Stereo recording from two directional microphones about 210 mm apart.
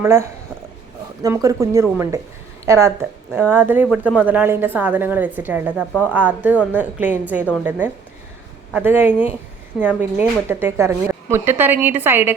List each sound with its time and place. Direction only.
0.0 s a woman's voice: 10° right (ahead or behind)
5.9 s speech: 5° left (ahead or behind)
6.1 s a woman's voice: 10° right (ahead or behind)